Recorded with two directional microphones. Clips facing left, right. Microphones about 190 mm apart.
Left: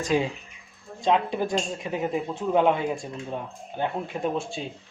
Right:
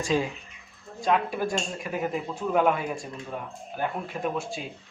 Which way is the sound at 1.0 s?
25° left (ahead or behind).